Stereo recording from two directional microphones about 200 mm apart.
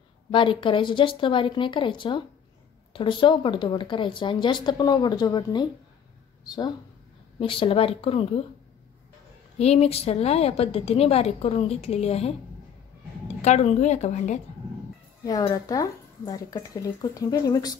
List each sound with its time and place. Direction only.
0.3 s speech: 25° left (ahead or behind)
9.6 s a woman's voice: 30° left (ahead or behind)
13.4 s a woman's voice: 35° left (ahead or behind)
15.4 s speech: 20° left (ahead or behind)